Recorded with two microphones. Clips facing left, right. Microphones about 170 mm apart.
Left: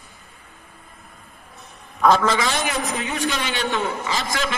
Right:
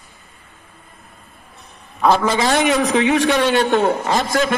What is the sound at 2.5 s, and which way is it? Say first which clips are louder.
A man's voice: right 9 dB; 75° right (ahead or behind).